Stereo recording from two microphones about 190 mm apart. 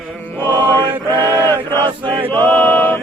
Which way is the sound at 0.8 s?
25° right (ahead or behind).